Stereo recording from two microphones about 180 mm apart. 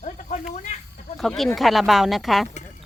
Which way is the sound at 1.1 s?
Centre (ahead or behind).